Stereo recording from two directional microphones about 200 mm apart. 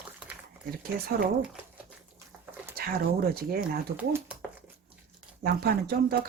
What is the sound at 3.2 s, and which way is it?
Speech, 50° right (ahead or behind).